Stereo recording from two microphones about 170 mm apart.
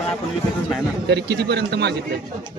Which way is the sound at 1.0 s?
80° right.